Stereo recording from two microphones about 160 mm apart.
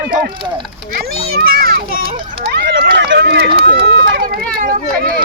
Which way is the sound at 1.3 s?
70° right (ahead or behind).